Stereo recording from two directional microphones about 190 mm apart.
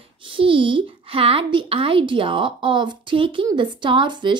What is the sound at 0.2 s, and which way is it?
A woman's voice, 25° right (ahead or behind).